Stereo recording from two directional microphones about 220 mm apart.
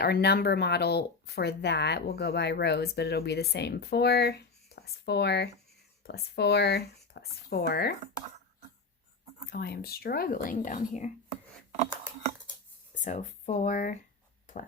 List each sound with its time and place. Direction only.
0.0 s speech: 45° left (ahead or behind)
9.5 s speech: 45° left (ahead or behind)
13.1 s speech: 35° left (ahead or behind)